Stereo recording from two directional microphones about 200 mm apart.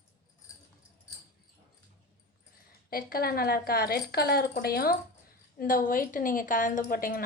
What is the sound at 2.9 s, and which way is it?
A woman's voice, 50° left (ahead or behind).